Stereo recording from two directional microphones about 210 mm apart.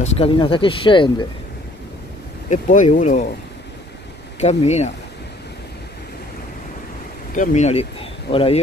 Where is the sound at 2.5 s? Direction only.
35° left (ahead or behind).